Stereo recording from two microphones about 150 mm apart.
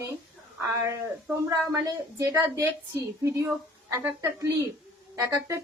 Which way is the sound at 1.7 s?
20° right (ahead or behind).